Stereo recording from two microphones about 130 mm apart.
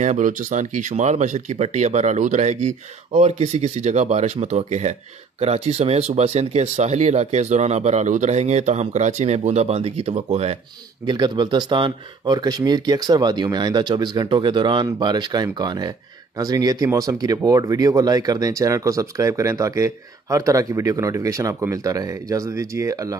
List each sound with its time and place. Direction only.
0.0 s speech: 70° right (ahead or behind); by 10.6 s 55° right (ahead or behind)
11.1 s speech: 35° right (ahead or behind)